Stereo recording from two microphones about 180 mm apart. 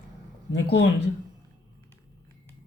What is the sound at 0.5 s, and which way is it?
Speech, 70° left (ahead or behind).